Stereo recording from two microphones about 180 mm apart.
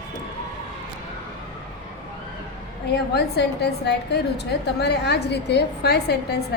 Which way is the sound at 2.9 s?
65° left (ahead or behind).